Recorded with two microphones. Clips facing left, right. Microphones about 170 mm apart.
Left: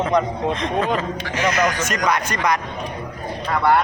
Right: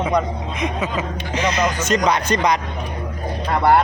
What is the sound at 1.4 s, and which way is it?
Speech, 20° right (ahead or behind).